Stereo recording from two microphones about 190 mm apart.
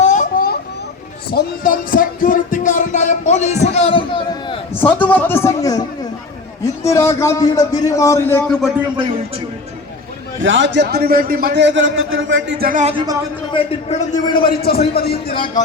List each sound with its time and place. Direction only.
0.0 s a sound: 40° left (ahead or behind)
1.3 s music: 50° left (ahead or behind); by 4.6 s 25° left (ahead or behind)
4.7 s a man's voice: 10° left (ahead or behind)
6.8 s a man's voice: 15° left (ahead or behind)
10.4 s a man's voice: 75° right (ahead or behind)
12.5 s speech: 50° right (ahead or behind)
13.5 s a man's voice: 30° left (ahead or behind)
14.5 s speech: 50° left (ahead or behind)